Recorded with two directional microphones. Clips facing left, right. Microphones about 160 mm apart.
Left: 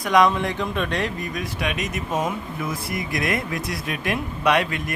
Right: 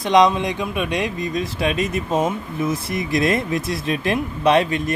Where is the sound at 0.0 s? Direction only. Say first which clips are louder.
Right 3 dB; 20° right (ahead or behind).